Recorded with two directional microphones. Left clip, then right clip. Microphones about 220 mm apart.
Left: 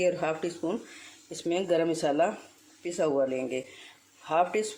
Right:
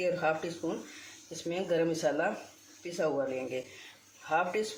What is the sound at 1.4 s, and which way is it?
Speech, 50° left (ahead or behind).